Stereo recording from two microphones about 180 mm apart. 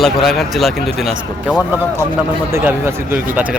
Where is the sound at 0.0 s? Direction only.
Centre (ahead or behind).